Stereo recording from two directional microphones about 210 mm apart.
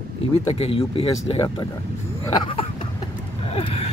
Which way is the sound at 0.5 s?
25° left (ahead or behind).